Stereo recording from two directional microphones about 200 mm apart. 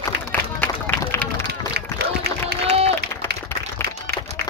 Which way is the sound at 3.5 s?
10° left (ahead or behind).